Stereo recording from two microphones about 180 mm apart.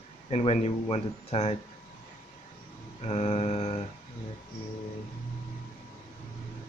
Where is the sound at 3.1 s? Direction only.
35° left (ahead or behind).